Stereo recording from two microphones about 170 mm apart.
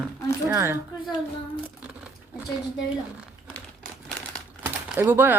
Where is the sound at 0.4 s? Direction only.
15° right (ahead or behind).